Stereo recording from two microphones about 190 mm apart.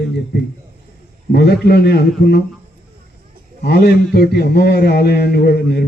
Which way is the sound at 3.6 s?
60° left (ahead or behind).